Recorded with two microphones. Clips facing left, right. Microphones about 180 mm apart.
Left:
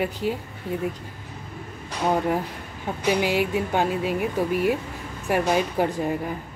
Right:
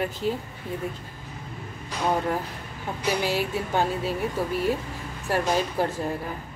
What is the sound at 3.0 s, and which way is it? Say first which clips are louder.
Speech: left 4 dB; 15° left (ahead or behind).